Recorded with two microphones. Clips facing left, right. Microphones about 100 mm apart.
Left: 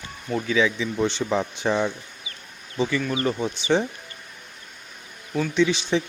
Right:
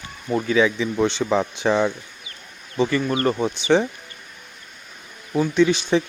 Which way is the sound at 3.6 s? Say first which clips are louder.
Right 4 dB; 75° right (ahead or behind).